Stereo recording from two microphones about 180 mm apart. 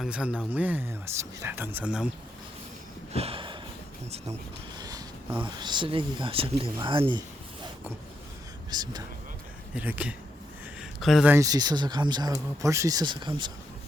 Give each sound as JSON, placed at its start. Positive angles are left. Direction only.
{"t": 0.0, "sound": "speech", "side_deg": -5}
{"t": 3.1, "sound": "a sound", "side_deg": -35}
{"t": 4.8, "sound": "a sound", "side_deg": -20}
{"t": 5.4, "sound": "speech", "side_deg": -25}
{"t": 8.7, "sound": "speech", "side_deg": -20}
{"t": 9.7, "sound": "speech", "side_deg": -10}